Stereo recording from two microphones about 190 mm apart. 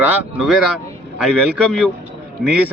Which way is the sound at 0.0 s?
5° right (ahead or behind).